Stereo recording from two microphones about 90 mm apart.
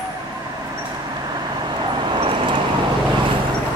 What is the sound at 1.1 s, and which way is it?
Vehicle, 50° right (ahead or behind).